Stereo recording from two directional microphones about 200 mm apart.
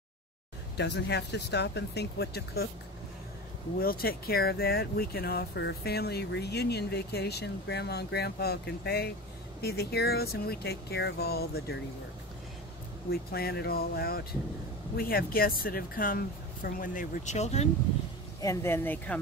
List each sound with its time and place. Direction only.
0.7 s speech: 60° left (ahead or behind)
3.8 s speech: 45° left (ahead or behind)
13.1 s speech: 50° left (ahead or behind); by 17.6 s 35° left (ahead or behind)
18.4 s speech: 15° left (ahead or behind)